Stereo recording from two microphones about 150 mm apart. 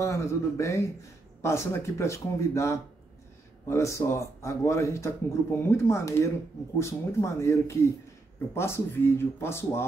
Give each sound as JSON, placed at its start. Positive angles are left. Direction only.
{"t": 0.0, "sound": "speech", "side_deg": 20}